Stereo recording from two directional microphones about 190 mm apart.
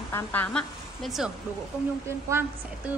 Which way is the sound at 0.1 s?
10° left (ahead or behind).